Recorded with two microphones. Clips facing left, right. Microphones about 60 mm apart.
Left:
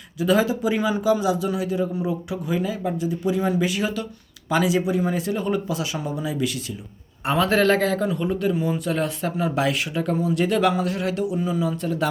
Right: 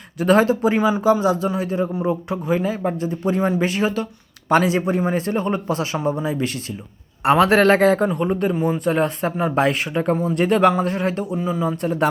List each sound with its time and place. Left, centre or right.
0.2 s a man's voice: right
4.4 s a man's voice: right
11.8 s a man's voice: right